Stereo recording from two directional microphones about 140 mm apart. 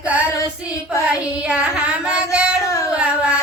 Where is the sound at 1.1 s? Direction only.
10° right (ahead or behind).